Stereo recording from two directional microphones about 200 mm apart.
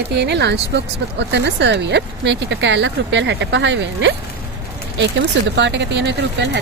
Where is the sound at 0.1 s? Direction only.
60° right (ahead or behind).